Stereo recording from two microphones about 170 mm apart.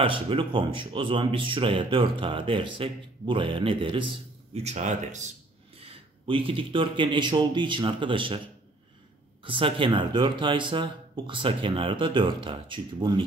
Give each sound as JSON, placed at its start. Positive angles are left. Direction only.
{"t": 0.0, "sound": "speech", "side_deg": -30}
{"t": 4.6, "sound": "speech", "side_deg": -40}
{"t": 5.8, "sound": "speech", "side_deg": -35}
{"t": 9.4, "sound": "speech", "side_deg": -30}